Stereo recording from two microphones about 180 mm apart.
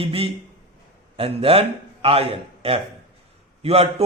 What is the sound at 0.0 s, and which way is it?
A man's voice, 30° right (ahead or behind).